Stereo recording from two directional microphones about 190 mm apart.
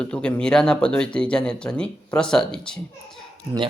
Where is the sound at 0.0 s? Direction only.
5° left (ahead or behind).